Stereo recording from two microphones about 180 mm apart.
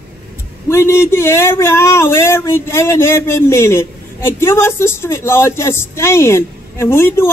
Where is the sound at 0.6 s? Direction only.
15° left (ahead or behind).